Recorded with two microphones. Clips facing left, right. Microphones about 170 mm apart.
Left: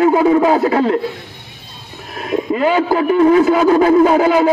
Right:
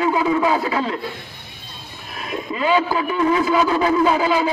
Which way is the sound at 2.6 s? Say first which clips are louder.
Left 3 dB; 55° left (ahead or behind).